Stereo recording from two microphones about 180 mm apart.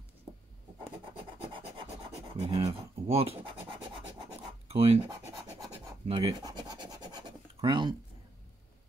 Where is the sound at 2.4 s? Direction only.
30° right (ahead or behind).